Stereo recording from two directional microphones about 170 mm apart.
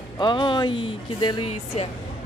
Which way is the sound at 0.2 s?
25° left (ahead or behind).